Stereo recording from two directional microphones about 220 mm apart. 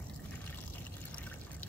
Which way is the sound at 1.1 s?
5° left (ahead or behind).